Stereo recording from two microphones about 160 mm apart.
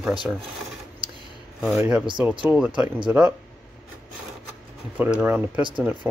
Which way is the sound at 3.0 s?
5° right (ahead or behind).